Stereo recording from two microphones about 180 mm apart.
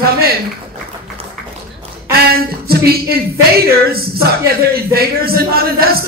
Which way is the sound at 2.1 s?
60° right (ahead or behind).